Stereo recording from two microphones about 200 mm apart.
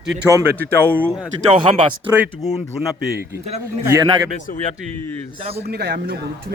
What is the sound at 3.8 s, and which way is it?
Speech, 15° right (ahead or behind).